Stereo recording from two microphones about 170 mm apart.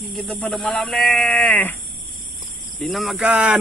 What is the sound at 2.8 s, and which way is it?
Speech, centre (ahead or behind).